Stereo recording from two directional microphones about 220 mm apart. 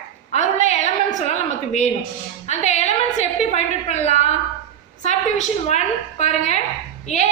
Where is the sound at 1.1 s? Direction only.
30° left (ahead or behind).